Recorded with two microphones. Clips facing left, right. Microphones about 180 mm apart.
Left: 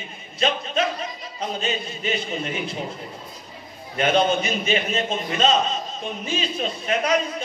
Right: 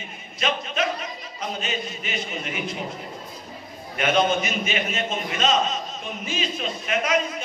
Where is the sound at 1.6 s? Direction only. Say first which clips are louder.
Left 3 dB; 30° left (ahead or behind).